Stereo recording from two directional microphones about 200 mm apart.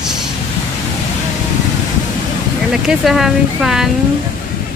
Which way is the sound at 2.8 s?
Centre (ahead or behind).